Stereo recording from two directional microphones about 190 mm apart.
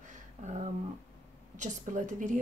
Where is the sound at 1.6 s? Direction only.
40° right (ahead or behind).